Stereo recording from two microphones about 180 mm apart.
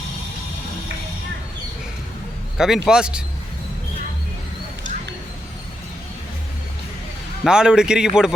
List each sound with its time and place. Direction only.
2.6 s a man's voice: centre (ahead or behind)
7.4 s a man's voice: 5° right (ahead or behind)